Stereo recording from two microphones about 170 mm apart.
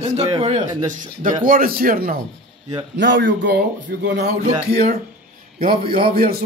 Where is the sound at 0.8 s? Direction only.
50° right (ahead or behind).